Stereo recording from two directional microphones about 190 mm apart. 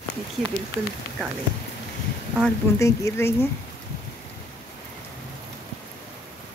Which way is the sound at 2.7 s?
15° left (ahead or behind).